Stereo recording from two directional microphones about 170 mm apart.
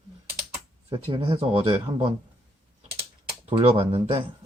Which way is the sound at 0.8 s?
30° right (ahead or behind).